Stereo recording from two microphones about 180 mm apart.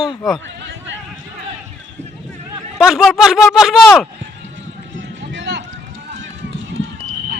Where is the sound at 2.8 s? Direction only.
Centre (ahead or behind).